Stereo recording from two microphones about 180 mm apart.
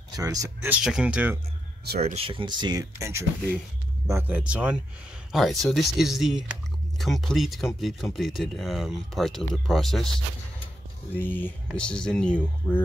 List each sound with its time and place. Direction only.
0.1 s speech: 20° right (ahead or behind)
0.8 s speech: 5° right (ahead or behind)
2.0 s speech: 35° right (ahead or behind); by 12.3 s 5° left (ahead or behind)